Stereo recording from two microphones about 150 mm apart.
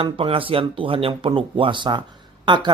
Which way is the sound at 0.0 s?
35° right (ahead or behind).